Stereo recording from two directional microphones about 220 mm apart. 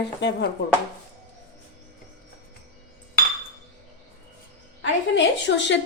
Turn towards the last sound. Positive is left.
turn(degrees=55)  # may be behind; listen again after turning